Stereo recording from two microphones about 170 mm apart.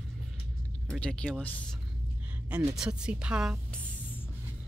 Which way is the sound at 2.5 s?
5° right (ahead or behind).